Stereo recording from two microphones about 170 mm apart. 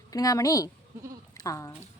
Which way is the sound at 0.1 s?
20° left (ahead or behind).